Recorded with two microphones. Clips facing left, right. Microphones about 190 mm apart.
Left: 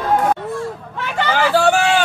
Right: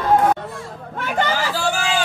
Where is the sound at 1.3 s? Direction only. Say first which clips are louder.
Left 7 dB; 65° left (ahead or behind).